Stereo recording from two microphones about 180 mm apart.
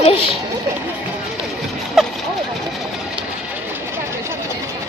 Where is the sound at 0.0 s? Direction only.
30° left (ahead or behind).